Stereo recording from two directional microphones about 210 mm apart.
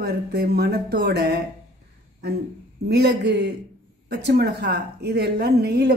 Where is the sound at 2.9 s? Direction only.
50° right (ahead or behind).